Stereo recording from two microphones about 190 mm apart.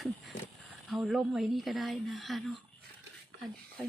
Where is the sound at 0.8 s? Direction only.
Centre (ahead or behind).